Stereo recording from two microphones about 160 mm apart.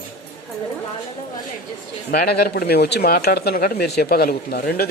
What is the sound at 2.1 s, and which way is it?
Speech, 75° left (ahead or behind).